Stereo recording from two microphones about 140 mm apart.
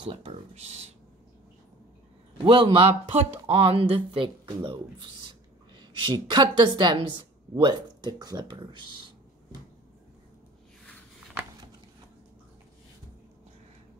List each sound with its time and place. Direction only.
0.0 s speech: 40° right (ahead or behind)
2.3 s a woman's voice: 35° right (ahead or behind)